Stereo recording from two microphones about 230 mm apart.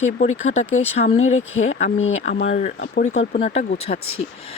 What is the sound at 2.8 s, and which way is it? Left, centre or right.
Speech, left.